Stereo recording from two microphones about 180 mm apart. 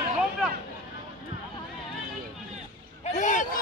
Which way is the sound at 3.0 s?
45° left (ahead or behind).